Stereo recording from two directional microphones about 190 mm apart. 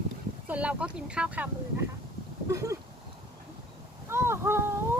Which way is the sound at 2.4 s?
15° right (ahead or behind).